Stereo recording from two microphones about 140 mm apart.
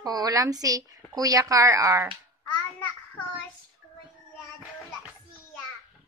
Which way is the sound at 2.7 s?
15° left (ahead or behind).